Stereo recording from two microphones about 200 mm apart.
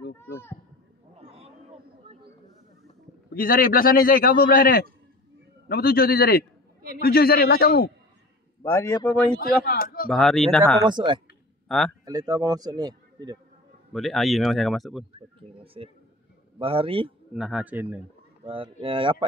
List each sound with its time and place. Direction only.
1.2 s a sound: 30° right (ahead or behind)
3.3 s a man's voice: 45° left (ahead or behind)
8.6 s a man's voice: 15° left (ahead or behind)
9.7 s a man's voice: 45° left (ahead or behind)
10.0 s speech: centre (ahead or behind)
10.8 s speech: 20° right (ahead or behind)
11.6 s a sound: centre (ahead or behind)
12.0 s a man's voice: 20° right (ahead or behind)
13.9 s speech: centre (ahead or behind)
15.1 s speech: 25° right (ahead or behind)
17.3 s speech: 5° right (ahead or behind)
18.4 s speech: 25° right (ahead or behind)